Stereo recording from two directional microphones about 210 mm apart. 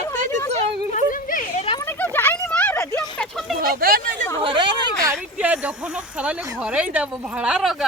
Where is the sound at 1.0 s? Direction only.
40° left (ahead or behind).